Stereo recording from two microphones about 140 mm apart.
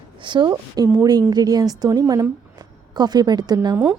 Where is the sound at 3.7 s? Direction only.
5° right (ahead or behind).